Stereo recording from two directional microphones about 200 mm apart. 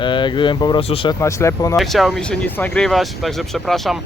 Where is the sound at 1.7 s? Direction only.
Centre (ahead or behind).